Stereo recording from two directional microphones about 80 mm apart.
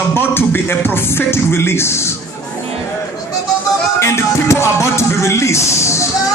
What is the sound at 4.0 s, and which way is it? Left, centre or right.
Music, left.